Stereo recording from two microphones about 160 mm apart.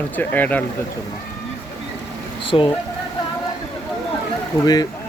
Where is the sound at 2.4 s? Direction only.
35° left (ahead or behind).